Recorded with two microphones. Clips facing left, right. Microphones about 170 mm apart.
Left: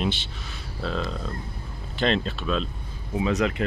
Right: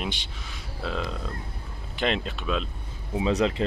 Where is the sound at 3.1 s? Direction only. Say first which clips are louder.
Even; 25° right (ahead or behind).